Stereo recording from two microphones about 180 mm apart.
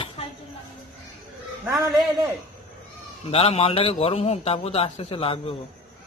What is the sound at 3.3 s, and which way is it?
A man's voice, 35° left (ahead or behind).